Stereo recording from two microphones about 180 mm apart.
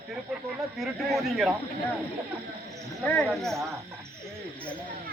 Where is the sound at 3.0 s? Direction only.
5° left (ahead or behind).